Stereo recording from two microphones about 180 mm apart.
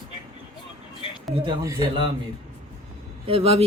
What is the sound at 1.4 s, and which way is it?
Speech, 20° right (ahead or behind).